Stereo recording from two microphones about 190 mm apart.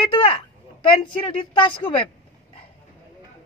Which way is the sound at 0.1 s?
25° left (ahead or behind).